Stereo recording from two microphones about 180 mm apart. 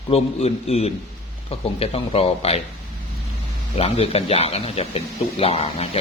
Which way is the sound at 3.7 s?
35° left (ahead or behind).